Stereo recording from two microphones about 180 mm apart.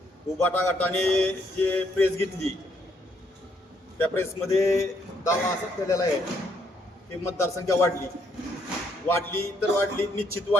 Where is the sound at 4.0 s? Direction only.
15° left (ahead or behind).